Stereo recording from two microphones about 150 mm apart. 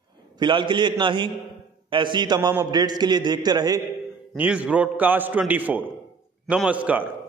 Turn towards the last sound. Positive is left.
turn(degrees=-10)  # may be behind; listen again after turning